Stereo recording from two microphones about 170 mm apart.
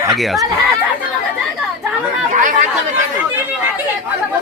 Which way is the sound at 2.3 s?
50° right (ahead or behind).